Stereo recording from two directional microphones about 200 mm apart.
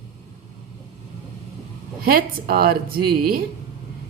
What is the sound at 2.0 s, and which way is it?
A woman's voice, 50° right (ahead or behind).